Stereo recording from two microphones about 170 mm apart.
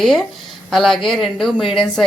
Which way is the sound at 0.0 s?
5° left (ahead or behind).